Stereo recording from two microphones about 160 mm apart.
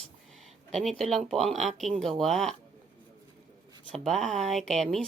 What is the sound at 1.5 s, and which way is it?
Speech, 45° right (ahead or behind).